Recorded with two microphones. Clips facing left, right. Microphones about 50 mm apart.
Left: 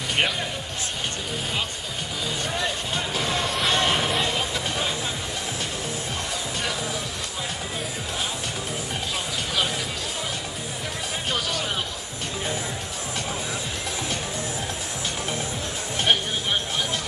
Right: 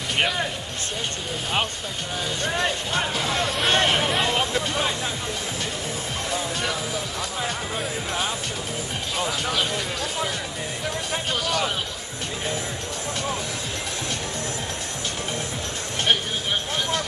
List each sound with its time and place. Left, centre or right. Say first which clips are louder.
2.4 s music: right 5 dB; right
3.2 s music: right 1 dB; centre